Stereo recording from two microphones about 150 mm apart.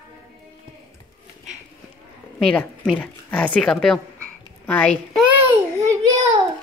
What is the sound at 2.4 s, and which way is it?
A woman's voice, 10° left (ahead or behind).